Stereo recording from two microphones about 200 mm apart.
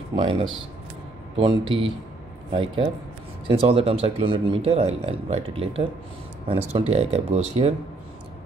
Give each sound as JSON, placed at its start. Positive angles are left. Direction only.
{"t": 0.1, "sound": "speech", "side_deg": -25}
{"t": 1.6, "sound": "speech", "side_deg": -25}